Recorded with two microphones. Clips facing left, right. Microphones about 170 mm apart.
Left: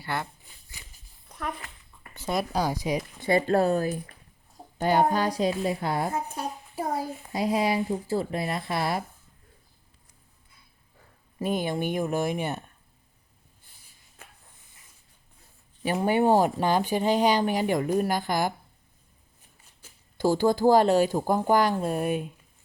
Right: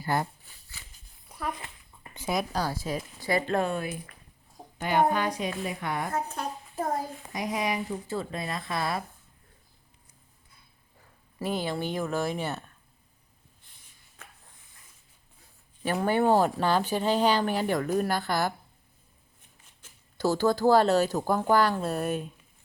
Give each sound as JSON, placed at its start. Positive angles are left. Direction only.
{"t": 0.0, "sound": "speech", "side_deg": -40}
{"t": 1.3, "sound": "a sound", "side_deg": -10}
{"t": 2.3, "sound": "speech", "side_deg": 0}
{"t": 2.6, "sound": "speech", "side_deg": 15}
{"t": 3.4, "sound": "a woman's voice", "side_deg": 35}
{"t": 6.1, "sound": "speech", "side_deg": 10}
{"t": 7.3, "sound": "speech", "side_deg": 30}
{"t": 11.3, "sound": "speech", "side_deg": 20}
{"t": 15.8, "sound": "speech", "side_deg": 15}
{"t": 19.8, "sound": "speech", "side_deg": 10}